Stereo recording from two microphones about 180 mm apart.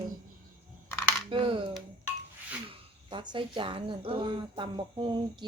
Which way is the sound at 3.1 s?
25° right (ahead or behind).